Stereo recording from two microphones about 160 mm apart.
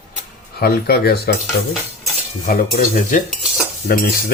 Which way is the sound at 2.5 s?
55° left (ahead or behind).